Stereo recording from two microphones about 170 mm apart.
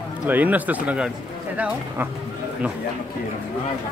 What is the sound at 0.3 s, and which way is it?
Speech, 10° right (ahead or behind).